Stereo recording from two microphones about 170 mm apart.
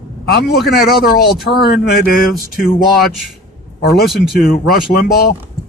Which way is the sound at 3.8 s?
70° left (ahead or behind).